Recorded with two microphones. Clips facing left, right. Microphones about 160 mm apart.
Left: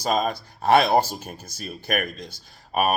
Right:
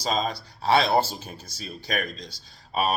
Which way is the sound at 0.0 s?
50° left (ahead or behind).